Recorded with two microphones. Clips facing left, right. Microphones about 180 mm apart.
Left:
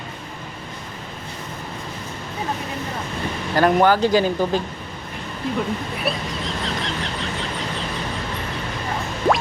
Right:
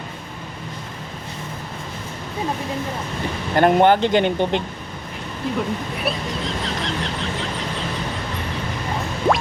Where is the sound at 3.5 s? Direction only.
25° right (ahead or behind).